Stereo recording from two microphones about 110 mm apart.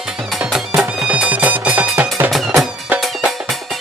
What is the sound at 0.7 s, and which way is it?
Music, 5° right (ahead or behind).